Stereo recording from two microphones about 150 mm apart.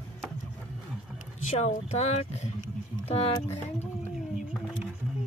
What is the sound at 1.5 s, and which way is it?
Speech, 45° left (ahead or behind).